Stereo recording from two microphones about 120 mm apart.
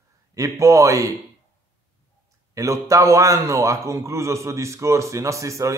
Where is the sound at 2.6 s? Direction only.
25° right (ahead or behind).